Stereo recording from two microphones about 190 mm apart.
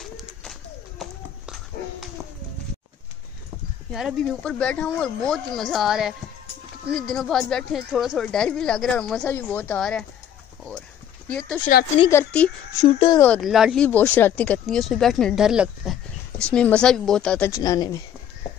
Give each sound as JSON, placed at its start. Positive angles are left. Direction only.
{"t": 0.0, "sound": "bird", "side_deg": 0}
{"t": 3.9, "sound": "speech", "side_deg": 0}
{"t": 11.2, "sound": "speech", "side_deg": 5}
{"t": 12.8, "sound": "speech", "side_deg": 30}
{"t": 13.2, "sound": "speech", "side_deg": 5}
{"t": 17.5, "sound": "speech", "side_deg": 15}